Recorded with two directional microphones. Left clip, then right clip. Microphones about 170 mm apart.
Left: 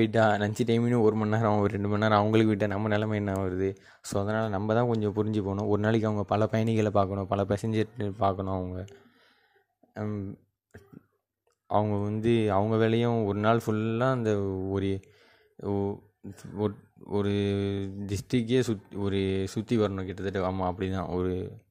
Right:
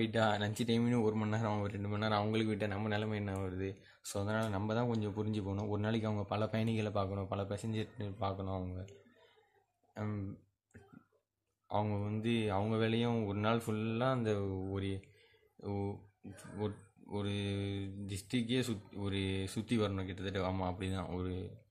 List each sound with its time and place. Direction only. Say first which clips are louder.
0.0 s speech: left 9 dB; 40° left (ahead or behind)
9.9 s speech: left 8 dB; 35° left (ahead or behind)
11.6 s speech: left 10 dB; 40° left (ahead or behind)